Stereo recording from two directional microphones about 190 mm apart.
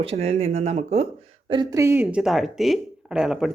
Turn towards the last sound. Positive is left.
turn(degrees=0)  # may be behind; listen again after turning